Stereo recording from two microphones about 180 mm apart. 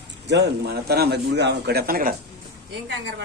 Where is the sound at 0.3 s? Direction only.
70° right (ahead or behind).